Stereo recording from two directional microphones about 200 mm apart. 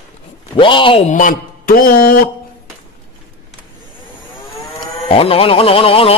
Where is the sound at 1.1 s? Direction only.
40° left (ahead or behind).